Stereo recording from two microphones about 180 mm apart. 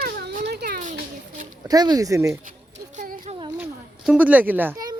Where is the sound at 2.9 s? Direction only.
45° right (ahead or behind).